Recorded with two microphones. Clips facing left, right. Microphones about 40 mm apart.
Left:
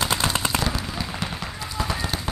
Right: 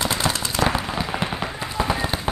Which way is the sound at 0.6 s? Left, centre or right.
Right.